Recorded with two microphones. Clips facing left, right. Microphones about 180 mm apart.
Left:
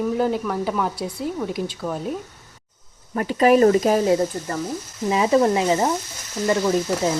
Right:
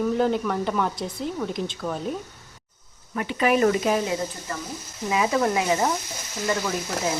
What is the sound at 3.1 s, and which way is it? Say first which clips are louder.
Speech: left 6 dB; 40° left (ahead or behind).